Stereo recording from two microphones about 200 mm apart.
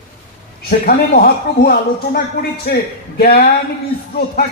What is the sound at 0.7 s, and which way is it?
A man's voice, 45° left (ahead or behind).